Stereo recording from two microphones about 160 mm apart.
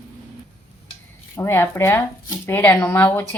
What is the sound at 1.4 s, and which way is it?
A woman's voice, 15° left (ahead or behind).